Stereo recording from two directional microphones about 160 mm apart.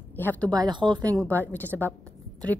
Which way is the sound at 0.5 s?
25° right (ahead or behind).